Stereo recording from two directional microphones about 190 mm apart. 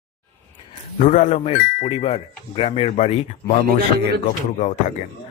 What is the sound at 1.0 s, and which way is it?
Speech, 40° left (ahead or behind).